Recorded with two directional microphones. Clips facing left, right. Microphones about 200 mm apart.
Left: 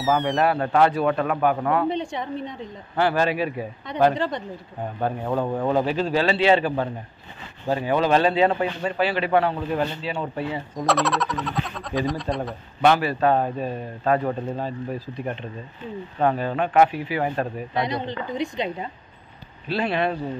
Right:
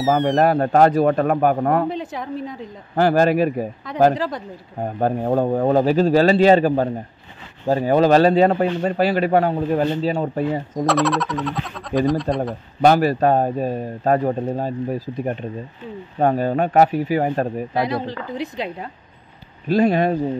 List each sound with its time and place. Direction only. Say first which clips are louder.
0.0 s speech: right 4 dB; centre (ahead or behind)
0.4 s speech: right 5 dB; 40° right (ahead or behind)
1.9 s speech: even; centre (ahead or behind)
3.0 s speech: right 6 dB; 45° right (ahead or behind)
4.1 s speech: right 2 dB; centre (ahead or behind)
4.8 s speech: right 6 dB; 40° right (ahead or behind)
10.9 s speech: right 3 dB; centre (ahead or behind)
12.8 s speech: right 4 dB; 40° right (ahead or behind)
17.7 s speech: right 2 dB; 5° right (ahead or behind)
19.7 s speech: right 7 dB; 45° right (ahead or behind)